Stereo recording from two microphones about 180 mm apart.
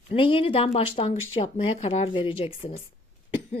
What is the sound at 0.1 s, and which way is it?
Speech, 30° left (ahead or behind).